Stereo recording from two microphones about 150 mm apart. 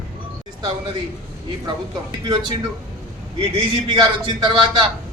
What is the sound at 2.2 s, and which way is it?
Speech, 30° right (ahead or behind).